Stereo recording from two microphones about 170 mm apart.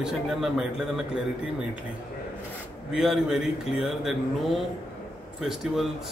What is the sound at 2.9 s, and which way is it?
Speech, 5° right (ahead or behind).